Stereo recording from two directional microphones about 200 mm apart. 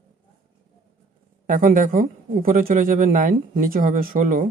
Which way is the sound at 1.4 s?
40° right (ahead or behind).